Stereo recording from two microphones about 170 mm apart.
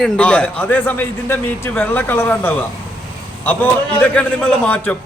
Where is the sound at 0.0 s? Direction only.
5° left (ahead or behind).